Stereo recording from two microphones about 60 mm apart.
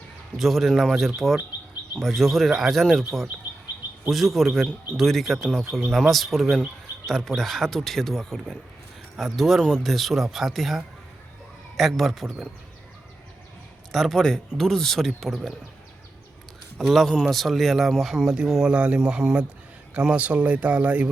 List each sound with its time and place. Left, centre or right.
0.3 s speech: centre
4.1 s speech: centre
13.9 s speech: centre
16.7 s speech: centre; by 21.1 s right